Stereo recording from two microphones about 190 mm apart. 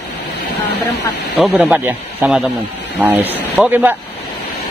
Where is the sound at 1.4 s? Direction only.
5° right (ahead or behind).